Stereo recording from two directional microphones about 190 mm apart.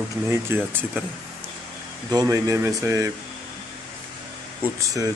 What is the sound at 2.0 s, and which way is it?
Speech, 20° right (ahead or behind).